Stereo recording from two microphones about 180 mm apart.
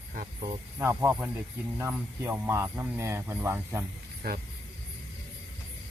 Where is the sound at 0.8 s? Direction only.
15° right (ahead or behind).